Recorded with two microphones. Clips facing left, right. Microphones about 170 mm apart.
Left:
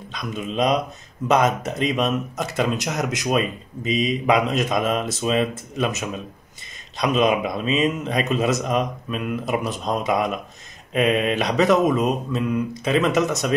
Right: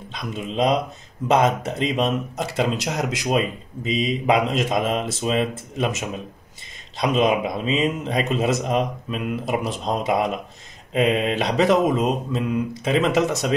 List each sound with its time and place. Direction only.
0.1 s speech: 25° right (ahead or behind)